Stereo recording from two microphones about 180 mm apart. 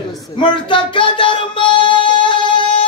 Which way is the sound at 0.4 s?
25° left (ahead or behind).